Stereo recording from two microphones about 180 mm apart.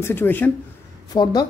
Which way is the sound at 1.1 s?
20° left (ahead or behind).